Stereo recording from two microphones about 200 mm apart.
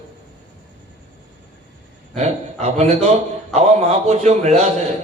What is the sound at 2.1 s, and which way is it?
Speech, 35° right (ahead or behind).